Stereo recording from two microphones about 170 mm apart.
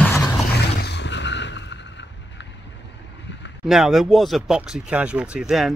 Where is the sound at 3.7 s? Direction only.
Centre (ahead or behind).